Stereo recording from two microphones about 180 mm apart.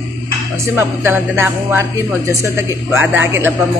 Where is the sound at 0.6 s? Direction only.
15° right (ahead or behind).